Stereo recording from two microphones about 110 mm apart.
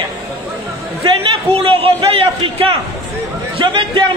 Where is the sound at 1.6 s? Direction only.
55° right (ahead or behind).